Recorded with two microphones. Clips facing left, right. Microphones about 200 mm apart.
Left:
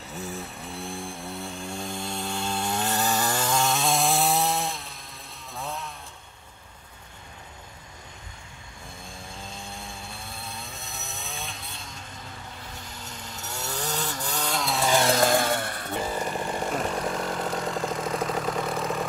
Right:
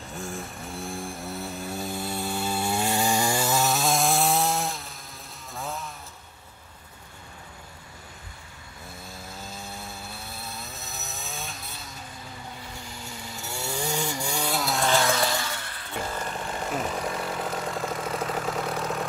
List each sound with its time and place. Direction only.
0.3 s vehicle: centre (ahead or behind)
5.5 s chainsaw: centre (ahead or behind)
9.0 s chainsaw: 5° right (ahead or behind)
15.0 s a sound: 45° left (ahead or behind)
16.0 s chainsaw: 10° left (ahead or behind)